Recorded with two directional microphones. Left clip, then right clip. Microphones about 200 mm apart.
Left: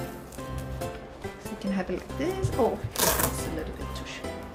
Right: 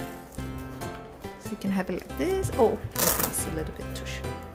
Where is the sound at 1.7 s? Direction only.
40° right (ahead or behind).